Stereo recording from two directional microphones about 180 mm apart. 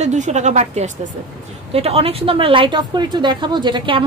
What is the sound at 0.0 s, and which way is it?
A woman's voice, 40° right (ahead or behind).